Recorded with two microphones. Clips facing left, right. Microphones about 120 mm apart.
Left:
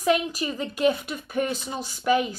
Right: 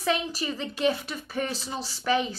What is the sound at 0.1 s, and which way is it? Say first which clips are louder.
Speech: left 5 dB; 35° right (ahead or behind).